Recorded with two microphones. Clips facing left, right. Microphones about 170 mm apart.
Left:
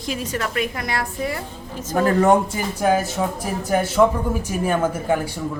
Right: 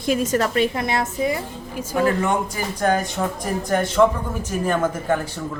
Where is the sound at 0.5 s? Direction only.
25° right (ahead or behind).